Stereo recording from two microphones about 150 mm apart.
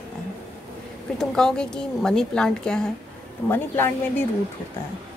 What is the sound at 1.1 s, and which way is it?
Speech, 5° left (ahead or behind).